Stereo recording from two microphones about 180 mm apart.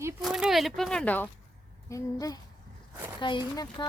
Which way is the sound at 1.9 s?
20° left (ahead or behind).